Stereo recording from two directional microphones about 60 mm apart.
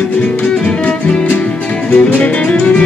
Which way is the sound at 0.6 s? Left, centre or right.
Left.